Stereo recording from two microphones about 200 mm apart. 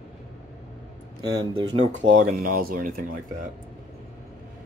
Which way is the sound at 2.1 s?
45° right (ahead or behind).